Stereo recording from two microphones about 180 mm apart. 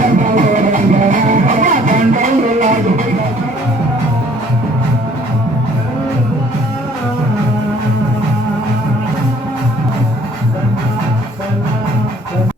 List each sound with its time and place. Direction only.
0.2 s music: 45° right (ahead or behind)